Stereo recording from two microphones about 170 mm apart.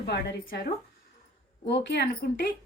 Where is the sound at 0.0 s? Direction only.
75° left (ahead or behind).